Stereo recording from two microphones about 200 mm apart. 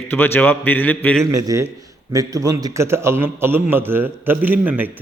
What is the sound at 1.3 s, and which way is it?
A man's voice, 15° right (ahead or behind).